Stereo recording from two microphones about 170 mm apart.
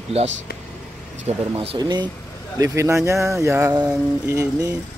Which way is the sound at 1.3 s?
35° right (ahead or behind).